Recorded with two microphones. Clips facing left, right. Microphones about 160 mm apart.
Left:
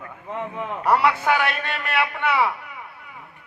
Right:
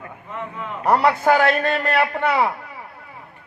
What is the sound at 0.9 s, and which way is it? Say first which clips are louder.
A man's voice: right 3 dB; 35° right (ahead or behind).